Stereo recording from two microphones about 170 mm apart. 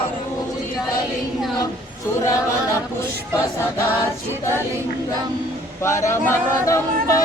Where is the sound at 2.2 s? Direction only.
20° left (ahead or behind).